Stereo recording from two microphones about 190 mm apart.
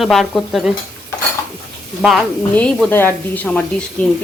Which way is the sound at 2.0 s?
Centre (ahead or behind).